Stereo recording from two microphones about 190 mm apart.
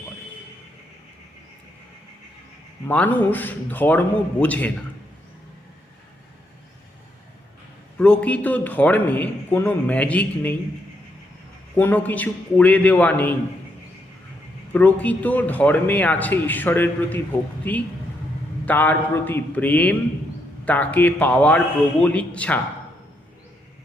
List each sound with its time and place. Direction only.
2.8 s a man's voice: 10° left (ahead or behind)
7.9 s a man's voice: 5° left (ahead or behind)
11.8 s a man's voice: 10° left (ahead or behind)
14.7 s a man's voice: 10° left (ahead or behind)